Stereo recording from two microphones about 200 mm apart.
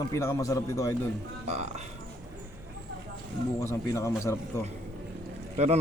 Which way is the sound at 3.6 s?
15° left (ahead or behind).